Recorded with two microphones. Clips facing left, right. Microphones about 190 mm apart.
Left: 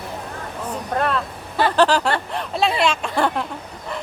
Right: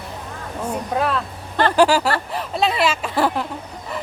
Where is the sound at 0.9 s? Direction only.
5° right (ahead or behind).